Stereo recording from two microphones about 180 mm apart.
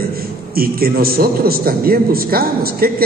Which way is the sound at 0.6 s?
55° right (ahead or behind).